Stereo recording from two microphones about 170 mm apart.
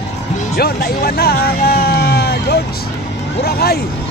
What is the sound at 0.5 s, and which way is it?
Speech, 65° left (ahead or behind).